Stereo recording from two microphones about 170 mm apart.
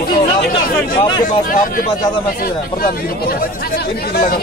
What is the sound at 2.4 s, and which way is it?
Speech, 60° left (ahead or behind).